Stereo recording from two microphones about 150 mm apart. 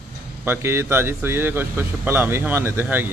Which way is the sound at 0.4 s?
15° right (ahead or behind).